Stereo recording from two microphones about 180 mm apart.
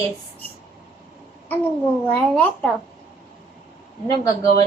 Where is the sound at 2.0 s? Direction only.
5° left (ahead or behind).